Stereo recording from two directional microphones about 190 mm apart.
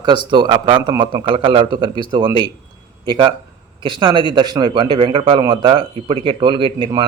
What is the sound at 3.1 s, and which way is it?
A man's voice, 25° right (ahead or behind).